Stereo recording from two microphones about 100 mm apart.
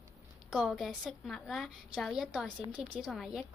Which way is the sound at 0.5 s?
Centre (ahead or behind).